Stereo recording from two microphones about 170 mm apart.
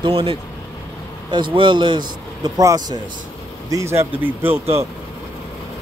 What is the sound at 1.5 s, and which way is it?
A man's voice, 30° right (ahead or behind).